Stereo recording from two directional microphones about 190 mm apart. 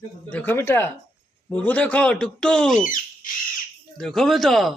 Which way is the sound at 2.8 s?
45° left (ahead or behind).